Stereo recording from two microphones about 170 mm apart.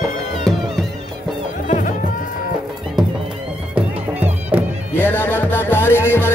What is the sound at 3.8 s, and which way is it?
Music, 10° right (ahead or behind).